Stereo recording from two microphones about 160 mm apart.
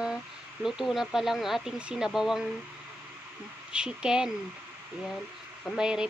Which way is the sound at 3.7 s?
5° right (ahead or behind).